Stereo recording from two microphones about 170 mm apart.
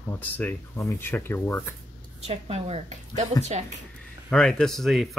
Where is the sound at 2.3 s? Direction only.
35° right (ahead or behind).